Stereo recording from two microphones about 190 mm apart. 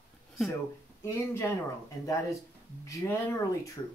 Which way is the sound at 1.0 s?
15° left (ahead or behind).